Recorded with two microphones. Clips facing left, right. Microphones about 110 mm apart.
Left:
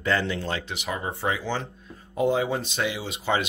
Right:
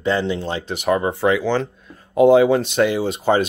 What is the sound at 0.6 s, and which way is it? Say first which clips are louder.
Speech: right 12 dB; 50° right (ahead or behind).